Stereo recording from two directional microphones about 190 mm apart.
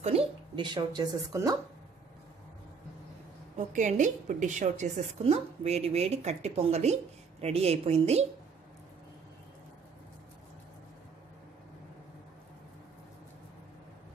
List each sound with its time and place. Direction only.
0.0 s a woman's voice: 30° right (ahead or behind)
3.5 s a woman's voice: 40° right (ahead or behind)